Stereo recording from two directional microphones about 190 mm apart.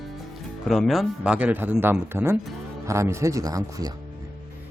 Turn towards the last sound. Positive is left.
turn(degrees=-20)  # may be behind; listen again after turning